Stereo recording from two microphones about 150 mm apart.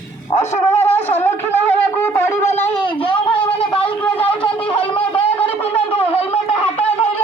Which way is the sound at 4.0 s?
10° left (ahead or behind).